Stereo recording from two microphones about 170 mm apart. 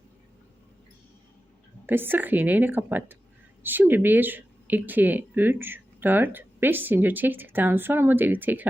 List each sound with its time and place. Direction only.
1.9 s speech: 10° right (ahead or behind)